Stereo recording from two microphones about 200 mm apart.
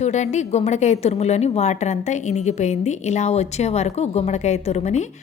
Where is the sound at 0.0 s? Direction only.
35° left (ahead or behind).